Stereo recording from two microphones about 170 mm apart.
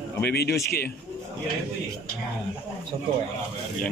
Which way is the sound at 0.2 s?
75° left (ahead or behind).